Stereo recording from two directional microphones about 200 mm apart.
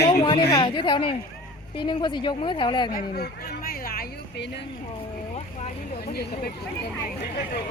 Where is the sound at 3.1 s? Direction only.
50° left (ahead or behind).